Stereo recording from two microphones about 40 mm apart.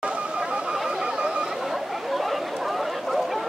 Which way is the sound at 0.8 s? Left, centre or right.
Right.